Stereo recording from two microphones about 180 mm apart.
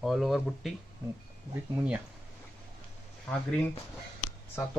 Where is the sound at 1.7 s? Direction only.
5° right (ahead or behind).